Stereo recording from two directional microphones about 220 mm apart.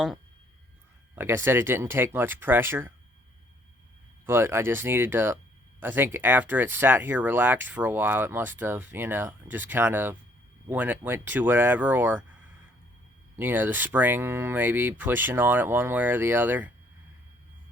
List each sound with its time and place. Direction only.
1.1 s speech: 10° right (ahead or behind)
4.3 s speech: 10° right (ahead or behind)
13.3 s speech: 10° right (ahead or behind)